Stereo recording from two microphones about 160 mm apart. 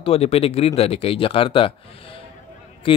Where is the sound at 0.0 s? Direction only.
40° left (ahead or behind).